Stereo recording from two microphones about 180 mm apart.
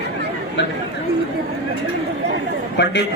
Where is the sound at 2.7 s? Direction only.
70° left (ahead or behind).